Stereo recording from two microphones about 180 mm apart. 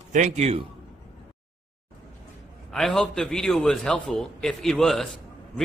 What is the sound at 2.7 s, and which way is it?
A man's voice, 5° left (ahead or behind).